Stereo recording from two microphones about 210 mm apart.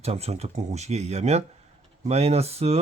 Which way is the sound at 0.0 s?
30° right (ahead or behind).